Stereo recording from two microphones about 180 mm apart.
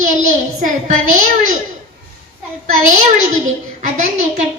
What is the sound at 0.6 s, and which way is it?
Speech, 45° right (ahead or behind).